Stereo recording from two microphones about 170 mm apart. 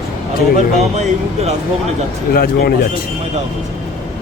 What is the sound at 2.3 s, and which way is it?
Speech, 65° left (ahead or behind).